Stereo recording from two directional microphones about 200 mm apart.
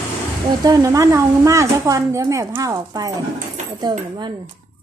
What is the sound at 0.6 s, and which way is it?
A woman's voice, 15° right (ahead or behind).